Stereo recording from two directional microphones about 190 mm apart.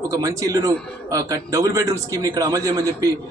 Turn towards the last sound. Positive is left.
turn(degrees=-15)  # may be behind; listen again after turning